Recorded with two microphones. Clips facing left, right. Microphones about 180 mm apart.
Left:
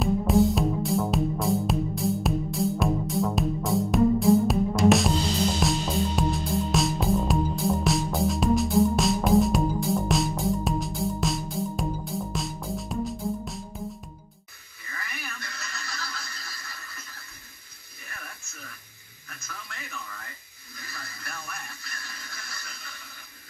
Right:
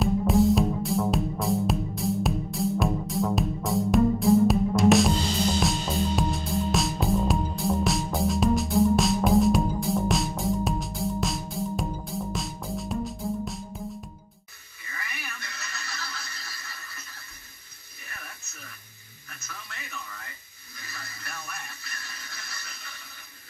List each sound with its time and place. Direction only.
0.0 s music: centre (ahead or behind)
14.9 s television: 15° right (ahead or behind)
19.7 s radio: 20° right (ahead or behind)